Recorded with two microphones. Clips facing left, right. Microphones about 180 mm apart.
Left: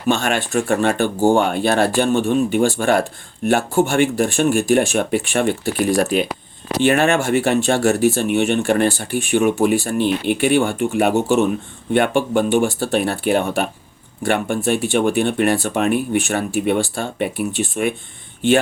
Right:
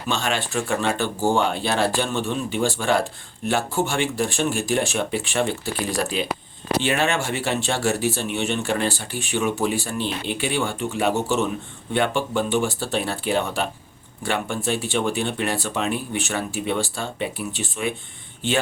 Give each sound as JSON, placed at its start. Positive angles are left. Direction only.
{"t": 0.1, "sound": "speech", "side_deg": 50}